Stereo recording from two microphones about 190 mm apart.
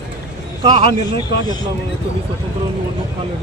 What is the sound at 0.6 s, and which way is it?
Speech, 25° right (ahead or behind).